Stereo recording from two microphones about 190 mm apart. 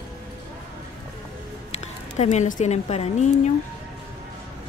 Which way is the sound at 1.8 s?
35° left (ahead or behind).